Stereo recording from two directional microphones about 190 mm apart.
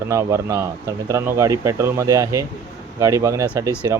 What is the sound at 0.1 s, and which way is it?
Speech, 15° right (ahead or behind).